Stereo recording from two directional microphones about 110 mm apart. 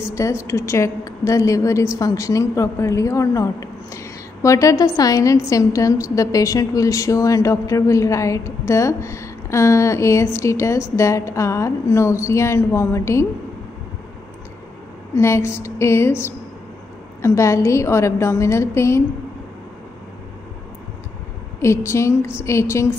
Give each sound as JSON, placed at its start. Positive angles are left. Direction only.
{"t": 0.1, "sound": "a woman's voice", "side_deg": 30}
{"t": 15.1, "sound": "a woman's voice", "side_deg": 25}
{"t": 21.5, "sound": "a woman's voice", "side_deg": 25}